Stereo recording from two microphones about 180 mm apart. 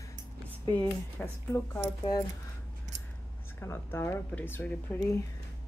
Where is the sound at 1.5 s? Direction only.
20° left (ahead or behind).